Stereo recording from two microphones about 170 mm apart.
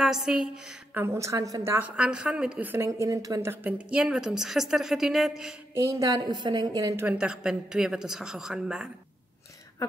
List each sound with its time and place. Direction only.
0.0 s a woman's voice: centre (ahead or behind)
1.0 s a woman's voice: 15° right (ahead or behind)
5.9 s a woman's voice: 20° right (ahead or behind)
7.1 s a woman's voice: 5° right (ahead or behind)